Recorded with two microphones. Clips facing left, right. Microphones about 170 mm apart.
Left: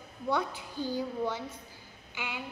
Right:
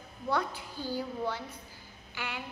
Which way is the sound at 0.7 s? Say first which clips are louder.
Left 3 dB; 20° left (ahead or behind).